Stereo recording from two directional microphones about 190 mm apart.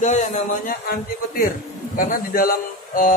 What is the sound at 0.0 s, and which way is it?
A man's voice, 40° left (ahead or behind).